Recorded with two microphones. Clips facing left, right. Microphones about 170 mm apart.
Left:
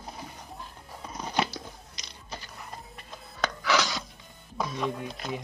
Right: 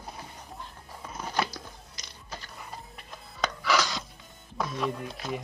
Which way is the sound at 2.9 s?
Centre (ahead or behind).